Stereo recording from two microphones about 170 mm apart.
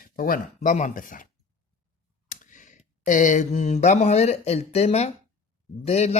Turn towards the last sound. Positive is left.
turn(degrees=40)  # may be behind; listen again after turning